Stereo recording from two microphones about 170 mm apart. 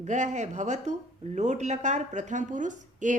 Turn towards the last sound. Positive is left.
turn(degrees=-45)  # may be behind; listen again after turning